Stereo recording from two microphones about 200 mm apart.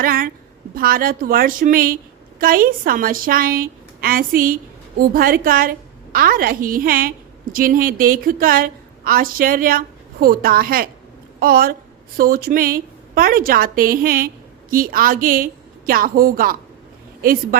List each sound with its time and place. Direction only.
0.0 s a woman's voice: 45° right (ahead or behind)